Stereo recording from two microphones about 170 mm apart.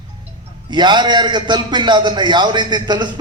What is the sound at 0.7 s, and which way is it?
A man's voice, 25° right (ahead or behind).